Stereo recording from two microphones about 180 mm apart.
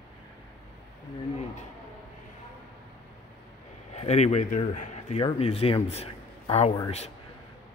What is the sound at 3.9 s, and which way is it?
Speech, 35° left (ahead or behind).